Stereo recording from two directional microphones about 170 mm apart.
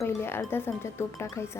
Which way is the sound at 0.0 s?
15° left (ahead or behind).